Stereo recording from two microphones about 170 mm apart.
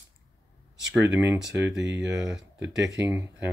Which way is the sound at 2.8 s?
15° right (ahead or behind).